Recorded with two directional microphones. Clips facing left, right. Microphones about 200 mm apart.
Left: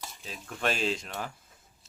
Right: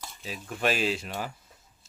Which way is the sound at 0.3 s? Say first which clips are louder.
Right 3 dB; 10° right (ahead or behind).